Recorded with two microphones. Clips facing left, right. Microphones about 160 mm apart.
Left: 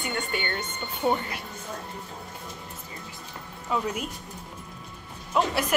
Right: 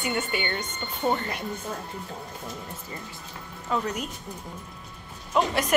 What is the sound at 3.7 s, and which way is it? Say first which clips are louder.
Speech: even; 5° left (ahead or behind).